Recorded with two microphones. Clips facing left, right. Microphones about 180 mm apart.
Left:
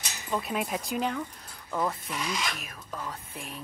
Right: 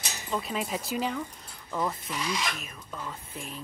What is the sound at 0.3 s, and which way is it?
Speech, 5° left (ahead or behind).